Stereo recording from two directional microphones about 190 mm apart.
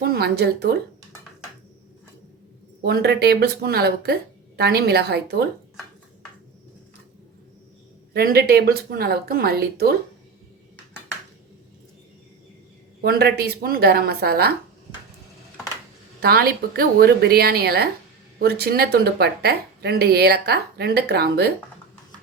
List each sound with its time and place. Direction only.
0.0 s speech: 55° right (ahead or behind)
2.8 s speech: 55° right (ahead or behind)
8.1 s speech: 55° right (ahead or behind)
13.0 s speech: 55° right (ahead or behind)
16.2 s speech: 55° right (ahead or behind)